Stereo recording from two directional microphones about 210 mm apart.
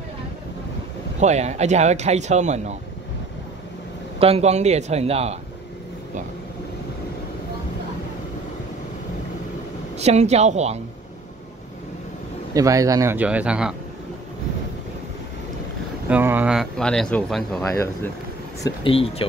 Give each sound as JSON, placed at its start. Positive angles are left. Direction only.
{"t": 1.2, "sound": "speech", "side_deg": -35}
{"t": 4.2, "sound": "speech", "side_deg": -30}
{"t": 9.9, "sound": "speech", "side_deg": -30}
{"t": 12.5, "sound": "speech", "side_deg": -15}
{"t": 16.1, "sound": "speech", "side_deg": -10}
{"t": 18.6, "sound": "speech", "side_deg": 25}